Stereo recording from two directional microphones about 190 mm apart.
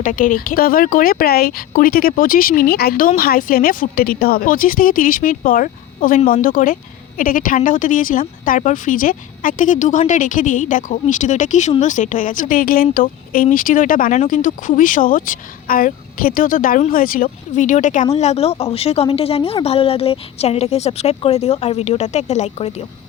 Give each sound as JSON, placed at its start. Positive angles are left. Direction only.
{"t": 0.0, "sound": "a woman's voice", "side_deg": 45}